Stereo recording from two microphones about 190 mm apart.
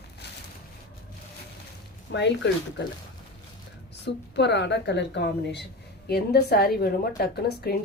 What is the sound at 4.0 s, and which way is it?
A woman's voice, 65° left (ahead or behind).